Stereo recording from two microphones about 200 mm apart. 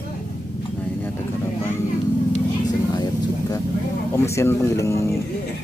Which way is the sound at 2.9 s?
20° left (ahead or behind).